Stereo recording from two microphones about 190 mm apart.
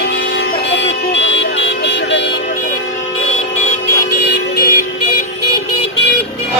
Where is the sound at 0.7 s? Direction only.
70° left (ahead or behind).